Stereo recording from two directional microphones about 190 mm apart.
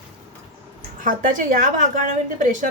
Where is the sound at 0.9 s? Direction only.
45° right (ahead or behind).